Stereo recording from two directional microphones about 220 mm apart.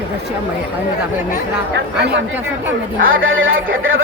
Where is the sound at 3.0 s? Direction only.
65° right (ahead or behind).